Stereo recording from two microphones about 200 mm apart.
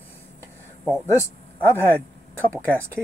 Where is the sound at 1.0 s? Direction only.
10° left (ahead or behind).